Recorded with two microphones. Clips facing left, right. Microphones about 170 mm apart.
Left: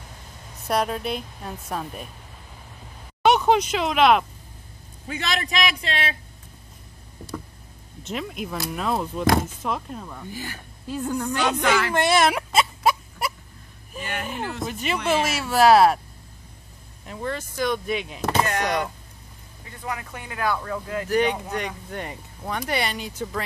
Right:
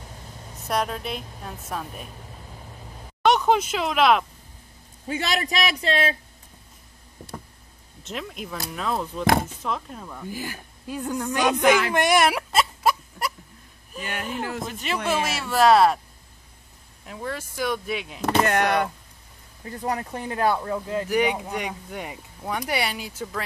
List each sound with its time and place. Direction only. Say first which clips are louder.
0.7 s a woman's voice: left 2 dB; centre (ahead or behind)
3.2 s speech: left 1 dB; centre (ahead or behind)
5.0 s speech: right 2 dB; 35° right (ahead or behind)
8.0 s a woman's voice: left 3 dB; centre (ahead or behind)
10.5 s a sound: left 1 dB; 10° right (ahead or behind)
14.2 s a woman's voice: right 1 dB; centre (ahead or behind)
17.0 s a woman's voice: left 2 dB; 5° right (ahead or behind)
18.4 s speech: right 3 dB; 60° right (ahead or behind)
19.6 s speech: right 5 dB; 40° right (ahead or behind)
21.1 s speech: left 2 dB; 10° right (ahead or behind)